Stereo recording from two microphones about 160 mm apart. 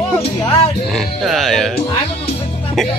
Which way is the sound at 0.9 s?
Centre (ahead or behind).